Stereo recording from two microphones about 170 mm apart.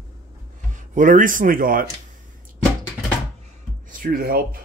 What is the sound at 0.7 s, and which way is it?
Speech, 50° right (ahead or behind).